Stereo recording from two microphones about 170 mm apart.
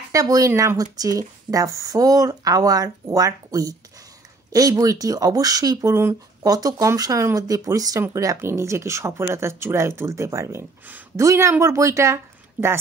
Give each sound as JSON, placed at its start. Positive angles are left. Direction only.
{"t": 0.1, "sound": "speech", "side_deg": -20}